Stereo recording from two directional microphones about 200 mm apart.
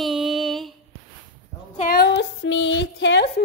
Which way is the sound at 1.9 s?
55° left (ahead or behind).